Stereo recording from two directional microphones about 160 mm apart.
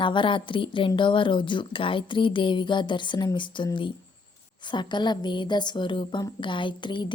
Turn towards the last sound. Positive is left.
turn(degrees=30)  # may be behind; listen again after turning